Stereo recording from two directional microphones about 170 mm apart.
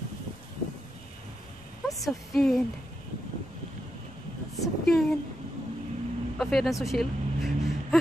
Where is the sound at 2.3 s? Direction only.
Centre (ahead or behind).